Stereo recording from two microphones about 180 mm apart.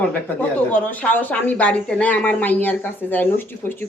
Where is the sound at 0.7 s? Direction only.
10° left (ahead or behind).